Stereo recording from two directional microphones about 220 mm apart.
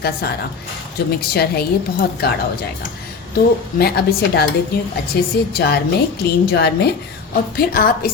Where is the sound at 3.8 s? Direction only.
45° left (ahead or behind).